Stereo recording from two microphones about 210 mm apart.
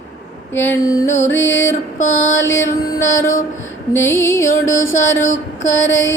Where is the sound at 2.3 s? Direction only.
10° left (ahead or behind).